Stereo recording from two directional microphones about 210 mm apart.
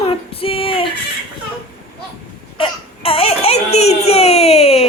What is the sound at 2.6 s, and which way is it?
Baby cry, 25° left (ahead or behind).